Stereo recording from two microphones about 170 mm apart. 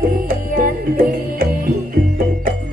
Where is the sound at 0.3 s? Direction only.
60° right (ahead or behind).